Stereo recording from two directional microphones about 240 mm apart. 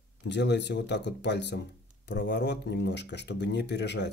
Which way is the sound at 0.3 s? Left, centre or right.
Left.